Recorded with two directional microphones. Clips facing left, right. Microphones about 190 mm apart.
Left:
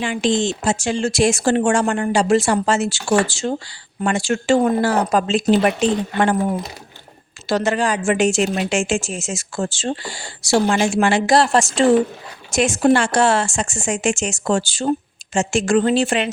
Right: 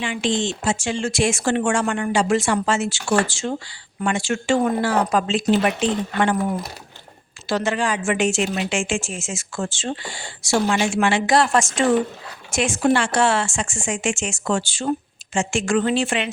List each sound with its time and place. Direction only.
0.0 s a woman's voice: 40° left (ahead or behind)